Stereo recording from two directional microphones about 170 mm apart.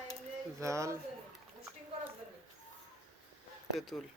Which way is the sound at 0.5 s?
15° right (ahead or behind).